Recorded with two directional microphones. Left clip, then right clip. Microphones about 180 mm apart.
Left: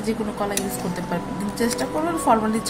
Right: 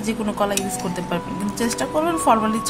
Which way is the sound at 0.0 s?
25° right (ahead or behind).